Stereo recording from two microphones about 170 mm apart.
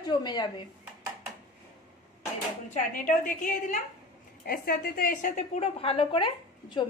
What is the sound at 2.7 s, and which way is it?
A woman's voice, 50° left (ahead or behind).